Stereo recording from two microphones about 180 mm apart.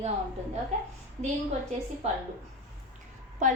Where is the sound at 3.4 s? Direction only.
45° right (ahead or behind).